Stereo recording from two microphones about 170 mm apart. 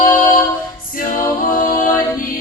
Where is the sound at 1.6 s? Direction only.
50° left (ahead or behind).